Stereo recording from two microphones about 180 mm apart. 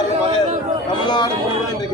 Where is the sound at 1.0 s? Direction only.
25° left (ahead or behind).